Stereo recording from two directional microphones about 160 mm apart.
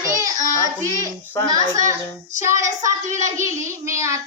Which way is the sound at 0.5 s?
20° left (ahead or behind).